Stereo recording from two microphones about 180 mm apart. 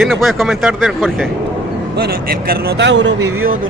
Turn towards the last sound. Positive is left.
turn(degrees=-80)